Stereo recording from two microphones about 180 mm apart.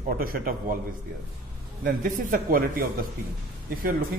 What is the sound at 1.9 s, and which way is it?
A man's voice, 50° right (ahead or behind).